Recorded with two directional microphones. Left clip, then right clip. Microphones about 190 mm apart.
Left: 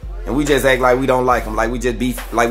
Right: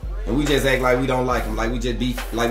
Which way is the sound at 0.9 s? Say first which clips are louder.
Left 6 dB; 15° left (ahead or behind).